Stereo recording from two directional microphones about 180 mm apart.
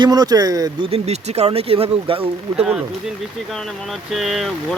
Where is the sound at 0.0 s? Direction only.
20° right (ahead or behind).